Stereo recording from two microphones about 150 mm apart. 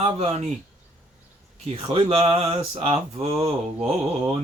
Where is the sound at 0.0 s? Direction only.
45° right (ahead or behind).